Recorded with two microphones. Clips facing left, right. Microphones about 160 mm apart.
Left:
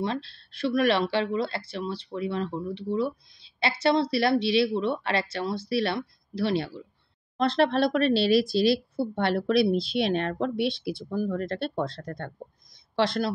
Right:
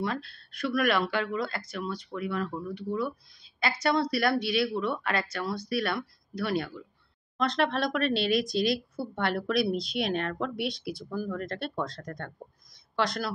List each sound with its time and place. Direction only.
0.0 s speech: 25° left (ahead or behind)